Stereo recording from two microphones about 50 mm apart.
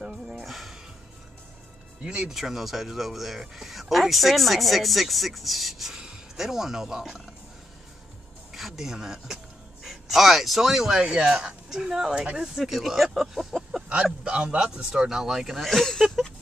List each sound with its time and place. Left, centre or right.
0.0 s music: centre
0.5 s music: centre
2.0 s speech: centre
2.3 s speech: centre
8.5 s speech: centre
14.2 s speech: right; by 16.3 s centre